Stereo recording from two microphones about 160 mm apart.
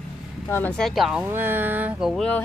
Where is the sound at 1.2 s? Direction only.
15° right (ahead or behind); by 2.4 s 5° left (ahead or behind).